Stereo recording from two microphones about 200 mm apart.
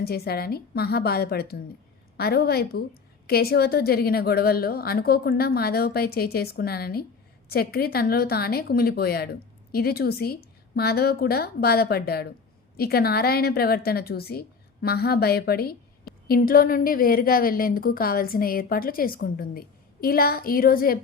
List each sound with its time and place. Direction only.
0.0 s a woman's voice: 50° left (ahead or behind)